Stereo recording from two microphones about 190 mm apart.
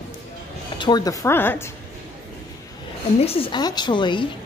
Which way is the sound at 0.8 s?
20° left (ahead or behind).